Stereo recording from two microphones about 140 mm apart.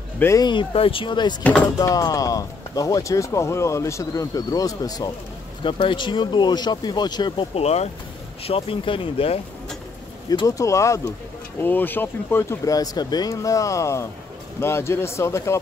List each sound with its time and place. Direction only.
0.2 s speech: 20° left (ahead or behind)
0.5 s speech: 40° left (ahead or behind)
1.4 s speech: 10° left (ahead or behind)
1.8 s speech: 25° left (ahead or behind)
7.5 s speech: 50° left (ahead or behind)
10.3 s speech: 25° left (ahead or behind)